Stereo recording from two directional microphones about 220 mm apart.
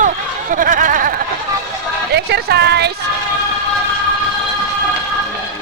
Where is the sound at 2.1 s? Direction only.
50° right (ahead or behind).